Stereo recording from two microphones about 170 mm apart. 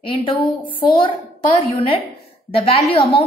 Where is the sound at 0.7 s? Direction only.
30° left (ahead or behind).